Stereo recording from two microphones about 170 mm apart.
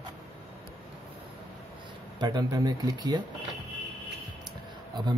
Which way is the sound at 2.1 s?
25° right (ahead or behind).